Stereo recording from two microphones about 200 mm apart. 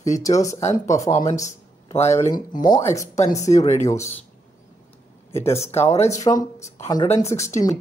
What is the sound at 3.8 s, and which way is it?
Speech, 15° left (ahead or behind).